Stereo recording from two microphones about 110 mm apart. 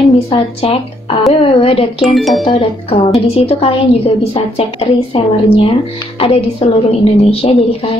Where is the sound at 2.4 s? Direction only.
55° left (ahead or behind).